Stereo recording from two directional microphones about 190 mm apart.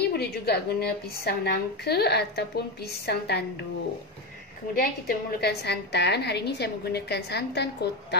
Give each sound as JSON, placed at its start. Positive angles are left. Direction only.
{"t": 0.1, "sound": "a woman's voice", "side_deg": 55}
{"t": 4.7, "sound": "a woman's voice", "side_deg": 55}